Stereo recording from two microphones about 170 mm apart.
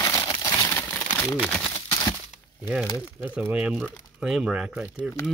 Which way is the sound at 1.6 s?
25° left (ahead or behind).